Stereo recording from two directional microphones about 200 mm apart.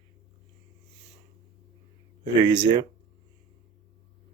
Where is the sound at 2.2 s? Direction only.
20° right (ahead or behind).